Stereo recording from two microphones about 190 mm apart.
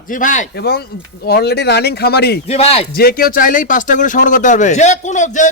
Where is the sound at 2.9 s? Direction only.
55° left (ahead or behind).